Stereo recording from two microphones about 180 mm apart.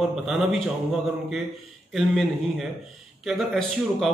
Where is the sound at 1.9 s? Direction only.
Centre (ahead or behind).